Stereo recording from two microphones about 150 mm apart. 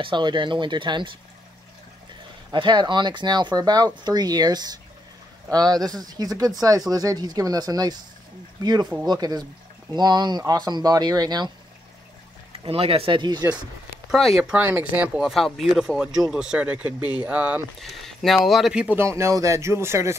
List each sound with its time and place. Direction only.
0.0 s speech: 30° right (ahead or behind)
2.5 s speech: 30° right (ahead or behind)
12.6 s speech: 40° right (ahead or behind)
14.1 s speech: centre (ahead or behind); by 20.2 s 15° right (ahead or behind)